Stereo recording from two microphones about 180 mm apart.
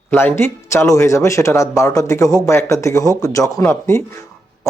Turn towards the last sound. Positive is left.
turn(degrees=15)  # may be behind; listen again after turning